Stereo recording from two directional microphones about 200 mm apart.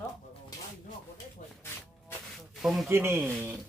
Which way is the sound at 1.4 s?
40° left (ahead or behind).